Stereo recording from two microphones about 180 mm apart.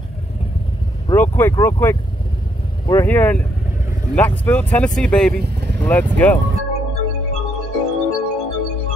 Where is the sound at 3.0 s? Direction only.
10° left (ahead or behind).